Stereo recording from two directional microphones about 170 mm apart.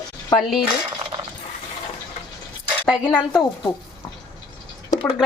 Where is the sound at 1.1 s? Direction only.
25° right (ahead or behind).